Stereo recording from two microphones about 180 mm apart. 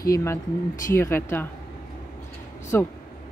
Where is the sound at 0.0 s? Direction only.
15° left (ahead or behind).